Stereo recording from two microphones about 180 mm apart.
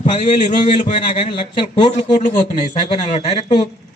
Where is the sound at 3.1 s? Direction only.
35° left (ahead or behind).